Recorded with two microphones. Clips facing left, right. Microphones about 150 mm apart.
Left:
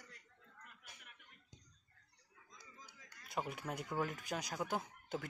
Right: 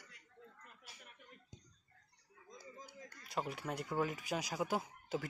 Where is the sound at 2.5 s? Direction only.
50° right (ahead or behind).